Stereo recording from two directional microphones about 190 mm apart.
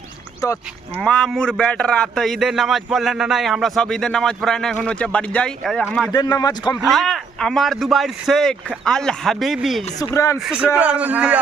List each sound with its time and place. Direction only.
0.4 s speech: 15° left (ahead or behind)
1.0 s a man's voice: 5° left (ahead or behind)
6.1 s a man's voice: 20° left (ahead or behind)
6.9 s a man's voice: centre (ahead or behind)
10.0 s speech: 15° left (ahead or behind)
10.4 s a man's voice: 5° right (ahead or behind)